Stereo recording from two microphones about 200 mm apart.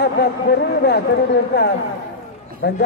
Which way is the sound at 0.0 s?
55° left (ahead or behind).